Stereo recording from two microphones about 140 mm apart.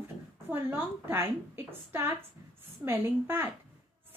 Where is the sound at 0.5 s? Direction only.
15° right (ahead or behind).